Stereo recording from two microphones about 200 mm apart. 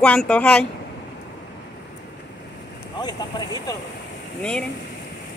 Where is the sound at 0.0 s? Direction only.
5° left (ahead or behind).